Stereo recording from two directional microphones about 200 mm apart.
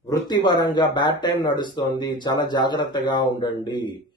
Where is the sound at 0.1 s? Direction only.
20° left (ahead or behind).